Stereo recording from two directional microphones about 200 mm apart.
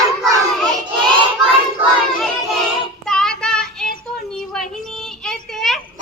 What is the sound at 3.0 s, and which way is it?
Child singing, centre (ahead or behind).